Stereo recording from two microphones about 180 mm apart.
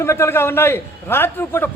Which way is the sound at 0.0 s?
15° left (ahead or behind).